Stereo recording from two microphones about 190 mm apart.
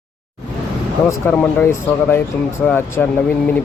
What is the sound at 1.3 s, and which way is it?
Speech, 5° left (ahead or behind).